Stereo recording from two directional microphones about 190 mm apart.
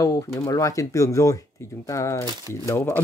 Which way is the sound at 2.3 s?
20° right (ahead or behind).